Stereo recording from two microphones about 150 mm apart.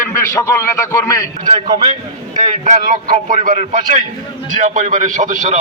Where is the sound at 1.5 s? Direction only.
30° right (ahead or behind).